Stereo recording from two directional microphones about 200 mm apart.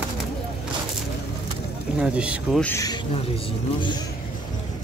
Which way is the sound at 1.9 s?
5° right (ahead or behind).